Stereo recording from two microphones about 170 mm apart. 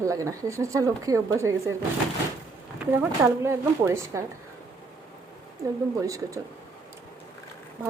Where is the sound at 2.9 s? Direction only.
15° right (ahead or behind).